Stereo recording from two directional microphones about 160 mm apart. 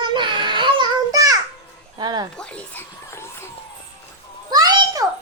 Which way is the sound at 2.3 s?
5° left (ahead or behind).